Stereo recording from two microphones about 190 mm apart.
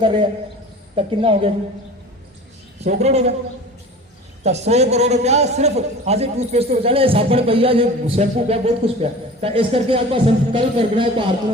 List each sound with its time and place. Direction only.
0.0 s a man's voice: 25° right (ahead or behind)
2.8 s a man's voice: 35° right (ahead or behind)
4.4 s a man's voice: 35° right (ahead or behind)